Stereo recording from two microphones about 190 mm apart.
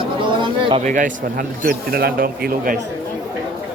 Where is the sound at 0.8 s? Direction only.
45° right (ahead or behind).